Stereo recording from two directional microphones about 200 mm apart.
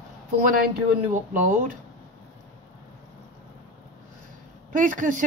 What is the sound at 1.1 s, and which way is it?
Speech, 40° right (ahead or behind).